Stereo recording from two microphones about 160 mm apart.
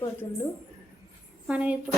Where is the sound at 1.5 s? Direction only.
10° right (ahead or behind).